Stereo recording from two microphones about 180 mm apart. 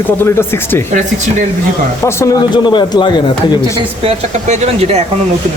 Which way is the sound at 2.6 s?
25° left (ahead or behind).